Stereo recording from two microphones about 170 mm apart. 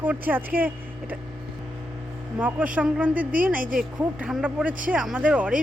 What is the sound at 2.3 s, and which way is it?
Speech, 10° right (ahead or behind).